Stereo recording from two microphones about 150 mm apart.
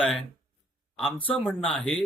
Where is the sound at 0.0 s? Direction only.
Centre (ahead or behind).